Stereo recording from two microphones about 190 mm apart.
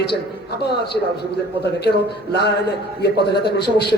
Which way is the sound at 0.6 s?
60° left (ahead or behind).